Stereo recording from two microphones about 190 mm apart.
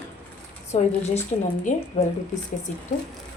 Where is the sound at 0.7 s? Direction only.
40° left (ahead or behind).